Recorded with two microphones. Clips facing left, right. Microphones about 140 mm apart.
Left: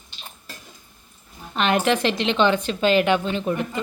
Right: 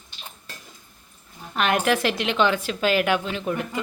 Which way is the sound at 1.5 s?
5° right (ahead or behind).